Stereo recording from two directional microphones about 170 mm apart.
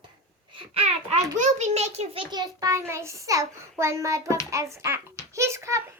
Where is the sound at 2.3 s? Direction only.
25° right (ahead or behind).